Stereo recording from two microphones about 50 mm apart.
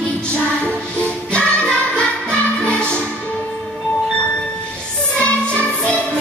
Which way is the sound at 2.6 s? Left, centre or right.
Left.